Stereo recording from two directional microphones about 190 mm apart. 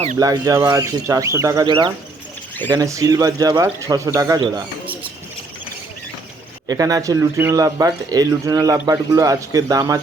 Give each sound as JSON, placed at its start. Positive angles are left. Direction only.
{"t": 0.2, "sound": "speech", "side_deg": -20}
{"t": 6.7, "sound": "speech", "side_deg": -20}